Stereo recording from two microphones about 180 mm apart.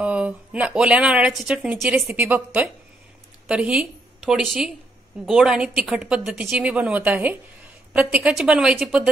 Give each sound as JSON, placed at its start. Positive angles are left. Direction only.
{"t": 0.0, "sound": "a woman's voice", "side_deg": -5}